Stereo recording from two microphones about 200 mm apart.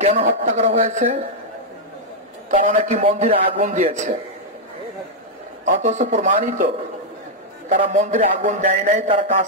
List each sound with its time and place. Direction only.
0.0 s a man's voice: 35° right (ahead or behind)
2.5 s a man's voice: 40° right (ahead or behind)
5.8 s a man's voice: 35° right (ahead or behind)
7.8 s a man's voice: 35° right (ahead or behind)